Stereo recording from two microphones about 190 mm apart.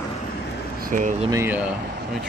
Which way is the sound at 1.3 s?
10° right (ahead or behind).